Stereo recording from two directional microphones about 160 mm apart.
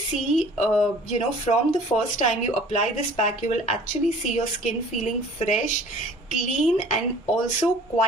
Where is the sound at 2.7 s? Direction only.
45° left (ahead or behind).